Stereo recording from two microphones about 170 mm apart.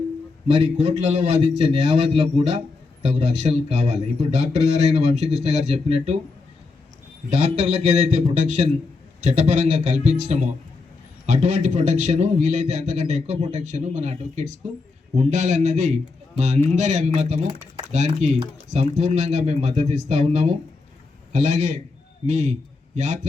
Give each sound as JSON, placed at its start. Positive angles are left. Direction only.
{"t": 0.4, "sound": "speech", "side_deg": -40}
{"t": 7.3, "sound": "a man's voice", "side_deg": -40}